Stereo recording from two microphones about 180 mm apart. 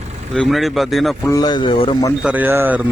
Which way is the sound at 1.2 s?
20° left (ahead or behind).